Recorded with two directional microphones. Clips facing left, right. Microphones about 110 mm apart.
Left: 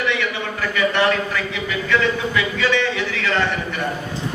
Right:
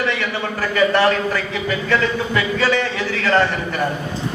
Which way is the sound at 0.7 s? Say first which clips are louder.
Right 3 dB; 40° right (ahead or behind).